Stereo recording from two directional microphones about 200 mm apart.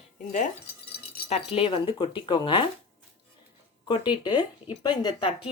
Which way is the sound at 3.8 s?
25° left (ahead or behind).